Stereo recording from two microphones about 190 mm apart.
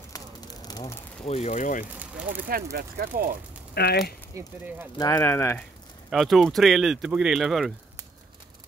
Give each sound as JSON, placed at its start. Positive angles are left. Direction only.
{"t": 0.1, "sound": "a sound", "side_deg": 20}
{"t": 1.2, "sound": "speech", "side_deg": 35}
{"t": 1.9, "sound": "speech", "side_deg": -10}
{"t": 2.4, "sound": "speech", "side_deg": -55}
{"t": 3.7, "sound": "speech", "side_deg": 60}
{"t": 4.3, "sound": "speech", "side_deg": -15}
{"t": 4.9, "sound": "speech", "side_deg": 20}
{"t": 6.0, "sound": "speech", "side_deg": 0}